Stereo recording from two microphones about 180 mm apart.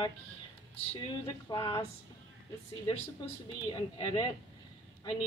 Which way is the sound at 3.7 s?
25° left (ahead or behind).